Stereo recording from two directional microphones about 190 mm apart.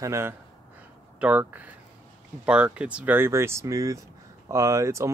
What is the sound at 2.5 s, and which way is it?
Speech, 5° right (ahead or behind).